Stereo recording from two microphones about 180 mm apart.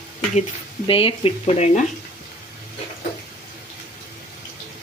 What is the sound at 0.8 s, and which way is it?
Speech, 30° left (ahead or behind).